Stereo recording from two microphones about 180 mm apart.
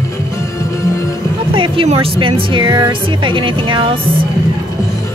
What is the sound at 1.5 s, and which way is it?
Speech, 30° right (ahead or behind).